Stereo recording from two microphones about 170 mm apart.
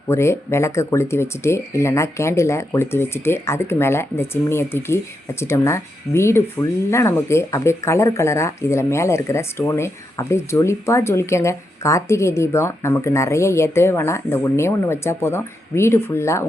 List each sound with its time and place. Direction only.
0.1 s speech: 15° left (ahead or behind)